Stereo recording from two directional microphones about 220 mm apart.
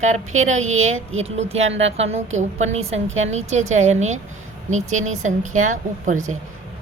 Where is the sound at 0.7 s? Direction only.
65° right (ahead or behind).